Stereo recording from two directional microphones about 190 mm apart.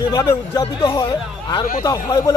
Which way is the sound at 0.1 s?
15° left (ahead or behind).